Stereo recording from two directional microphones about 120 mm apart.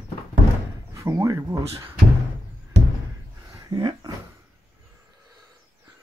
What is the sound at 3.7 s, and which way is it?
Speech, 35° right (ahead or behind).